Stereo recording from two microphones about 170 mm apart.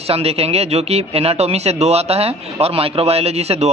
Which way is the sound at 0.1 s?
35° right (ahead or behind).